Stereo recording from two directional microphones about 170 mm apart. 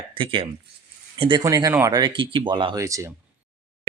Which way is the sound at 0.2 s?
30° right (ahead or behind).